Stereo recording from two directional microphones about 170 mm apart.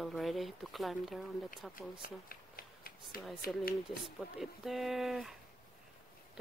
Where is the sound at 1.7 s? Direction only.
60° left (ahead or behind).